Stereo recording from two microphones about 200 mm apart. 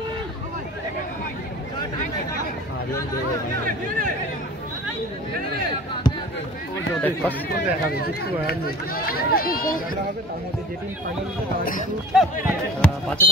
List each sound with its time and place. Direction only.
7.0 s speech: 10° left (ahead or behind)
7.5 s speech: 50° left (ahead or behind)
12.1 s speech: centre (ahead or behind)